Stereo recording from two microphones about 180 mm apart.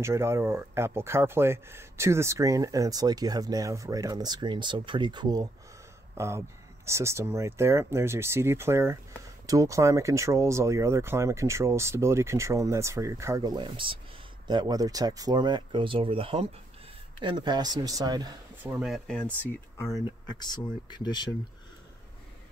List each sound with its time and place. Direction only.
0.0 s speech: 15° right (ahead or behind)
18.6 s speech: 10° right (ahead or behind)
20.1 s speech: 25° left (ahead or behind)